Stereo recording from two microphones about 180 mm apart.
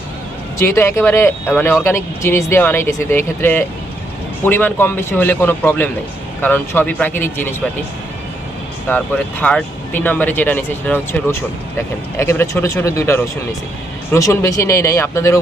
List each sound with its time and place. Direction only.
0.6 s speech: 15° left (ahead or behind)
8.9 s speech: 10° left (ahead or behind)